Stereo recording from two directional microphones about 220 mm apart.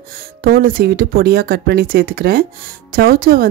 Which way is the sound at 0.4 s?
45° right (ahead or behind).